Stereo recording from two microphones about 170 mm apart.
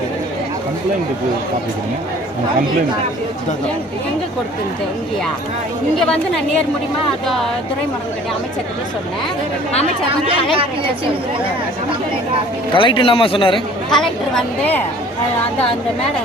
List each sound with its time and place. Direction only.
6.0 s speech: 5° left (ahead or behind)
12.7 s a man's voice: 30° left (ahead or behind)
13.9 s speech: 5° left (ahead or behind)